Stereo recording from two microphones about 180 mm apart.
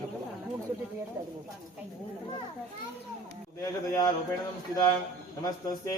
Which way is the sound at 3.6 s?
20° left (ahead or behind).